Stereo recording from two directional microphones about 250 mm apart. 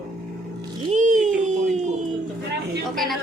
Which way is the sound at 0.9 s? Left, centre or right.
Right.